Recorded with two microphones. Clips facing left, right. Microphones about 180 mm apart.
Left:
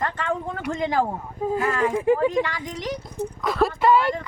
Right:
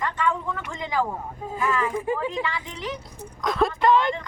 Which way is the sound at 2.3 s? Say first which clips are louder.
Left 5 dB; 40° left (ahead or behind).